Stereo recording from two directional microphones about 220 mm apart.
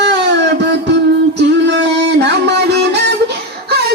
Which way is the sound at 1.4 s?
50° right (ahead or behind).